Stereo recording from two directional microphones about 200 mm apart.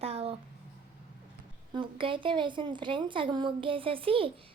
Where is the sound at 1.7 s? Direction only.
25° right (ahead or behind).